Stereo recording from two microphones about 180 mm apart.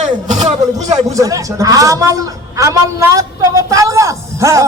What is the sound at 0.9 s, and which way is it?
A man's voice, 20° right (ahead or behind).